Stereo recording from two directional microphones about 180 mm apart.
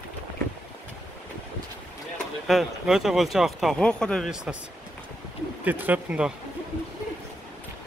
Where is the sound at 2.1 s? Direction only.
Centre (ahead or behind).